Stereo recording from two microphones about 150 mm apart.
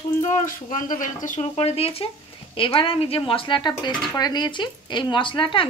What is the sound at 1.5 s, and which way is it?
Speech, 40° left (ahead or behind).